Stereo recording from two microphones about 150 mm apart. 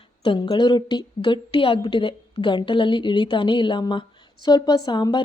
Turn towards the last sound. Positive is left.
turn(degrees=30)  # may be behind; listen again after turning